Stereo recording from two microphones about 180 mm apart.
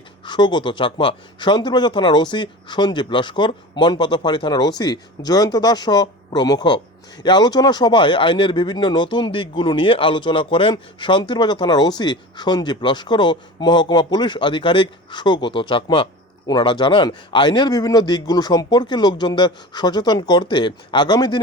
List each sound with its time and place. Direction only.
0.3 s speech: 25° left (ahead or behind)